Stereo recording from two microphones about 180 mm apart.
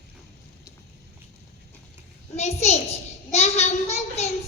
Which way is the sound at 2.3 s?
35° left (ahead or behind).